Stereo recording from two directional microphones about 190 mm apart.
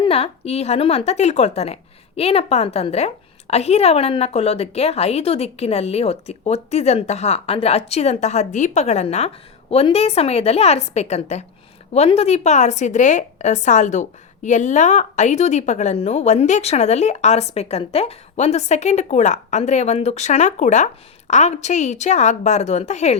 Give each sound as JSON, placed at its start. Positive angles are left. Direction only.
{"t": 0.0, "sound": "a woman's voice", "side_deg": 30}